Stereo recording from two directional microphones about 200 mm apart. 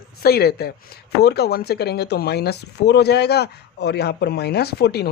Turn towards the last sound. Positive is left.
turn(degrees=55)  # may be behind; listen again after turning